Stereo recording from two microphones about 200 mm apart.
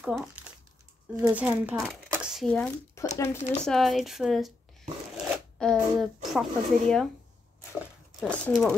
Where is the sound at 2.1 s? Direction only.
5° right (ahead or behind).